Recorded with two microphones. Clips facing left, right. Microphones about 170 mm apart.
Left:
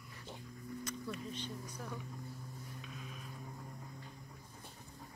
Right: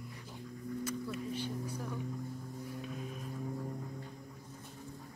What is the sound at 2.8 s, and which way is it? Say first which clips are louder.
Vehicle: right 9 dB; 45° right (ahead or behind).